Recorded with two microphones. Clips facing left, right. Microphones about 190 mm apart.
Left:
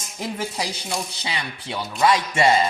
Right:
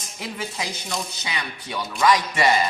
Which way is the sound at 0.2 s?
40° left (ahead or behind).